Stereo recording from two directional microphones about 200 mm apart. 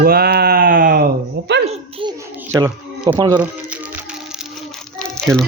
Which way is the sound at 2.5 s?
15° right (ahead or behind).